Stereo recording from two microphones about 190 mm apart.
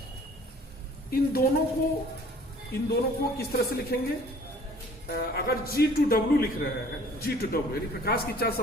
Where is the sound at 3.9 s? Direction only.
55° left (ahead or behind).